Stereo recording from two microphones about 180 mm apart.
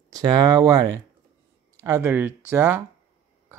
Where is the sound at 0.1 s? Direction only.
20° right (ahead or behind).